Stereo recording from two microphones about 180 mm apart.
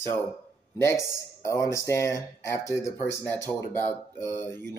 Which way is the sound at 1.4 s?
15° left (ahead or behind).